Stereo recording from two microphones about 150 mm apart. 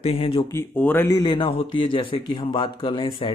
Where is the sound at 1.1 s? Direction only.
30° left (ahead or behind).